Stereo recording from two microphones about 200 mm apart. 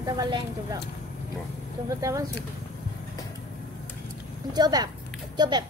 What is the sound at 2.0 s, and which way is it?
Speech, 15° right (ahead or behind).